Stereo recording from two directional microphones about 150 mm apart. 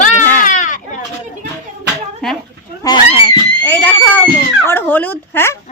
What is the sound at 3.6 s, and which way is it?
Speech, 15° left (ahead or behind).